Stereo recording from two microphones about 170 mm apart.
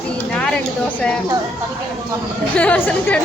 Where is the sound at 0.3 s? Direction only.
5° left (ahead or behind).